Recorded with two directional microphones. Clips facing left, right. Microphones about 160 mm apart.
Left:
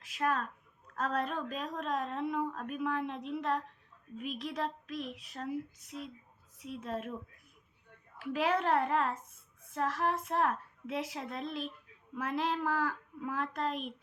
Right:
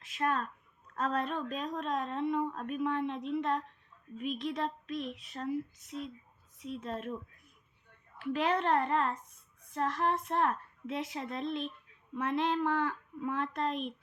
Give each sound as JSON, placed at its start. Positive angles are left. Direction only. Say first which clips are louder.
{"t": 0.0, "sound": "a woman's voice", "louder": "even", "side_deg": 0}
{"t": 8.2, "sound": "a woman's voice", "louder": "right 1 dB", "side_deg": 5}